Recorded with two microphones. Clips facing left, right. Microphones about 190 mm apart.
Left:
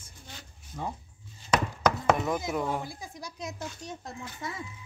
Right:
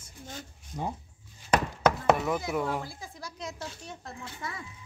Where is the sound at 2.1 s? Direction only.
5° right (ahead or behind).